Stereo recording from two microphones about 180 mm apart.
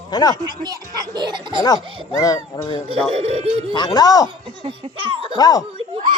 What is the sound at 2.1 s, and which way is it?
Speech, 20° left (ahead or behind).